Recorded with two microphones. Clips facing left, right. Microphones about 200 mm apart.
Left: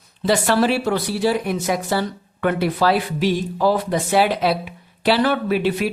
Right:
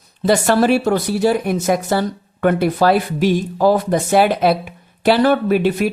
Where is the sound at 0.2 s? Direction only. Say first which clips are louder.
Right 3 dB; 45° right (ahead or behind).